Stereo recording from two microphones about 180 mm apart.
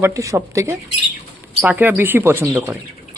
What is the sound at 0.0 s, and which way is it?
A man's voice, 15° right (ahead or behind).